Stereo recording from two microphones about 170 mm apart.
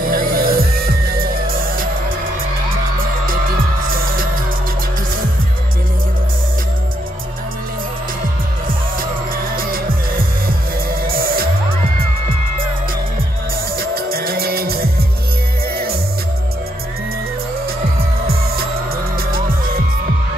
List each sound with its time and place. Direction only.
0.0 s music: 60° right (ahead or behind)
3.8 s music: 55° right (ahead or behind)
9.6 s music: 60° right (ahead or behind)
13.7 s music: 60° right (ahead or behind)